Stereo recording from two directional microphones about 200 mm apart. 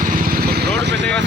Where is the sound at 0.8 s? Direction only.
60° right (ahead or behind).